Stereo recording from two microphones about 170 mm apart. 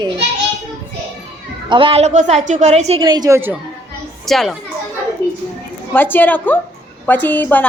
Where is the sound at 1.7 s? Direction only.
30° right (ahead or behind).